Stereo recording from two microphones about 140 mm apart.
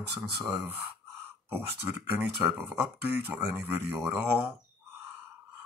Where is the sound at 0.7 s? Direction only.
15° right (ahead or behind).